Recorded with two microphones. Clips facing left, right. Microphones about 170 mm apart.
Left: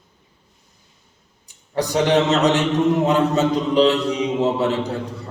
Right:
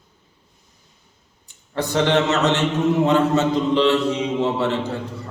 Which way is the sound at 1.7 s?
15° left (ahead or behind).